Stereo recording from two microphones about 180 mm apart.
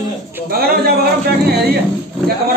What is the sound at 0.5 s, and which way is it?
Speech, 60° right (ahead or behind).